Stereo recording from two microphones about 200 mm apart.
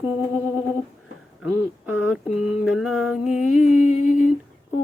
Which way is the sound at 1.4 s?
5° right (ahead or behind).